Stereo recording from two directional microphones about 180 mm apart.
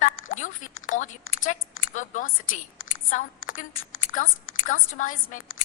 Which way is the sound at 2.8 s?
45° left (ahead or behind).